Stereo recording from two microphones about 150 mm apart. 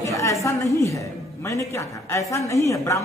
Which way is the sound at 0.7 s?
20° left (ahead or behind).